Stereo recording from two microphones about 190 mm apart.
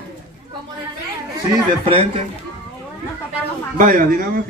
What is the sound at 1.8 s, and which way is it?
Speech, 30° right (ahead or behind).